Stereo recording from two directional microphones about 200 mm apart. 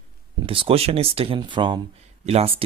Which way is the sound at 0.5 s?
30° right (ahead or behind).